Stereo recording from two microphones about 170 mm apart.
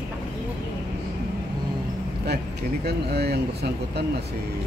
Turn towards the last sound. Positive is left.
turn(degrees=-70)  # may be behind; listen again after turning